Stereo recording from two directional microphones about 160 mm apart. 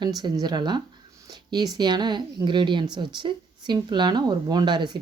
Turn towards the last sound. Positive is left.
turn(degrees=-30)  # may be behind; listen again after turning